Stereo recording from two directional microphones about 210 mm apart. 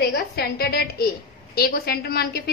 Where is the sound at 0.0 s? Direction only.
50° left (ahead or behind).